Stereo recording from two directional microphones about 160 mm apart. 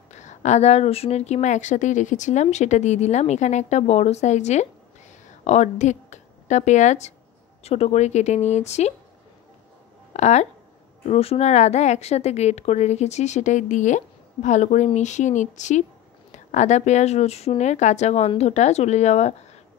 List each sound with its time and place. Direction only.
0.1 s a woman's voice: 45° left (ahead or behind)
10.1 s a woman's voice: 45° left (ahead or behind)